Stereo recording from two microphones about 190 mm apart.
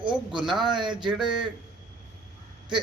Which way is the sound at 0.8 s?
25° right (ahead or behind).